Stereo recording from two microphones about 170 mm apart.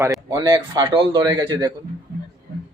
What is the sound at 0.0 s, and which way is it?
A man's voice, 20° right (ahead or behind).